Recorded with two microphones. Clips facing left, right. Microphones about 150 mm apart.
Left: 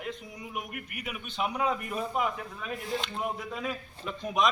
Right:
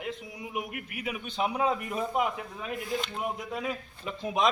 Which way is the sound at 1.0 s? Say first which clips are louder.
Right 3 dB; 30° right (ahead or behind).